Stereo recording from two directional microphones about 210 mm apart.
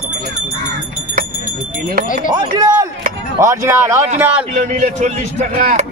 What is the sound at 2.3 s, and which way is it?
Speech, 20° right (ahead or behind).